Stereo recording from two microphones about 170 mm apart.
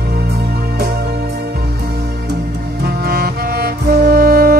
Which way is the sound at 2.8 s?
65° right (ahead or behind).